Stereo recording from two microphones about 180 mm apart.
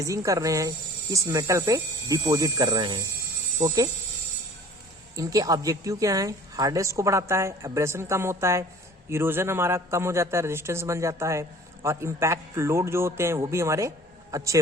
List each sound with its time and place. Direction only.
0.0 s a man's voice: 20° right (ahead or behind)
5.1 s a man's voice: 20° right (ahead or behind)